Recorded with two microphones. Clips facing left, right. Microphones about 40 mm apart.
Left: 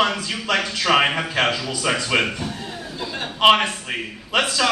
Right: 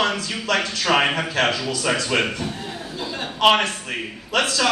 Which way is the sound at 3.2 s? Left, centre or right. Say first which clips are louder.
Left 2 dB; centre.